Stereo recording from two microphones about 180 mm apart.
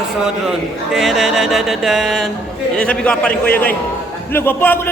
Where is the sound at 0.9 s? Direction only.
Centre (ahead or behind).